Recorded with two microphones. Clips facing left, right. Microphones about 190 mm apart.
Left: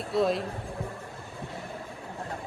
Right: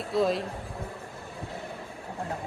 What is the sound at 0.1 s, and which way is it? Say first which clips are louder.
Speech: even; centre (ahead or behind).